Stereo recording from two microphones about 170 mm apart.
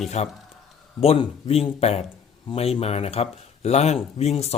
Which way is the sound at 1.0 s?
35° left (ahead or behind).